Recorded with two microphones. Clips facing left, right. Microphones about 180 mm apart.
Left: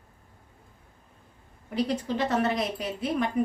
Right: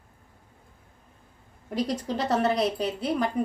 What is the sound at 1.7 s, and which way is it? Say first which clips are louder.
A woman's voice: even; 35° right (ahead or behind).